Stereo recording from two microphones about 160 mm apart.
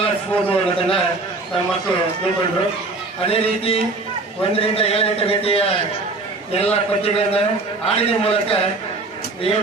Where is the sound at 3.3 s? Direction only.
35° left (ahead or behind).